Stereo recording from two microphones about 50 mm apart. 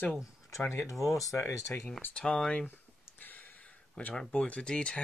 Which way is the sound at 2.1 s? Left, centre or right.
Centre.